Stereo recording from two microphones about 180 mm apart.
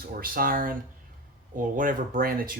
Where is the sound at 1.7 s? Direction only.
50° right (ahead or behind).